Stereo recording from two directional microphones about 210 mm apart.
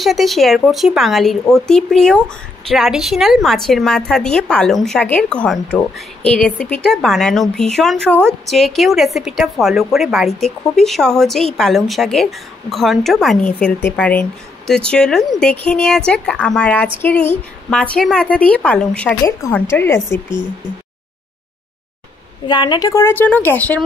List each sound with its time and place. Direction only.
0.0 s a woman's voice: centre (ahead or behind)
22.5 s a woman's voice: 20° left (ahead or behind)